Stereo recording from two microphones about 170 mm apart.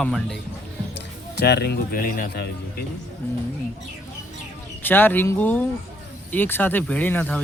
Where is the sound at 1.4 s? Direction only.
70° left (ahead or behind).